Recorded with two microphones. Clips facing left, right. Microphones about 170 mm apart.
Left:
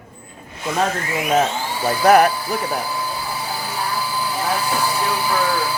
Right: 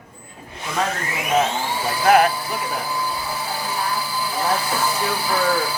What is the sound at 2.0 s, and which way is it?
Speech, 40° left (ahead or behind).